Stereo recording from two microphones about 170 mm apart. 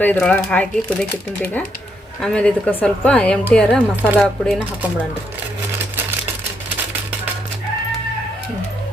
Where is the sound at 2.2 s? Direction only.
5° left (ahead or behind).